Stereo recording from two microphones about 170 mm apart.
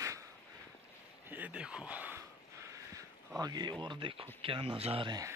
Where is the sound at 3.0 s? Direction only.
20° right (ahead or behind).